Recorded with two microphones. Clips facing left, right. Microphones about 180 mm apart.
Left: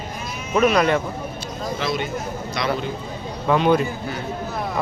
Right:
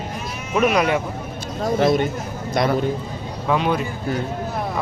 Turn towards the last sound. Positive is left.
turn(degrees=0)  # may be behind; listen again after turning